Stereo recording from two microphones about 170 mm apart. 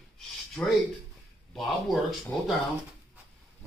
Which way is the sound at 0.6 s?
5° left (ahead or behind).